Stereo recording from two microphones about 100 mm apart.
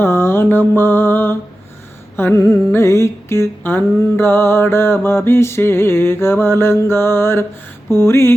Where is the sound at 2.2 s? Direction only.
20° left (ahead or behind).